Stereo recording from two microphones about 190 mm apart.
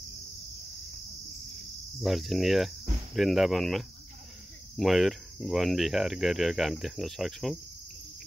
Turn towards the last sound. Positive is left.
turn(degrees=0)  # may be behind; listen again after turning